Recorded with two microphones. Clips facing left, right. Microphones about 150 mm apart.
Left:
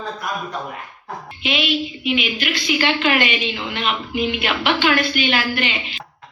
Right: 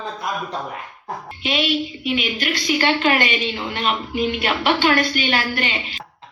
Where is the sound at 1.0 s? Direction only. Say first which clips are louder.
Even; 45° right (ahead or behind).